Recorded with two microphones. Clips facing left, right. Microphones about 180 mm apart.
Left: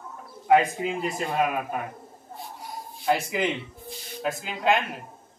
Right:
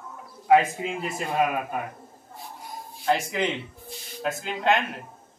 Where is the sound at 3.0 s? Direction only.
5° left (ahead or behind).